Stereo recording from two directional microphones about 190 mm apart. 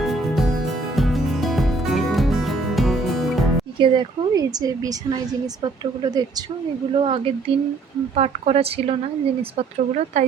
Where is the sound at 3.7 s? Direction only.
25° right (ahead or behind).